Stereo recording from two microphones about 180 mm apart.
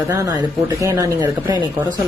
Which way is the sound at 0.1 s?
15° right (ahead or behind).